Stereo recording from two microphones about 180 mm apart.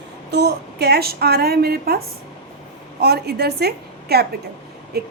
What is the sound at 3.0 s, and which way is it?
A woman's voice, 65° right (ahead or behind).